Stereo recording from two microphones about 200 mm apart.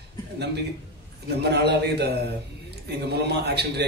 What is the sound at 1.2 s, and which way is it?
A man's voice, 55° right (ahead or behind).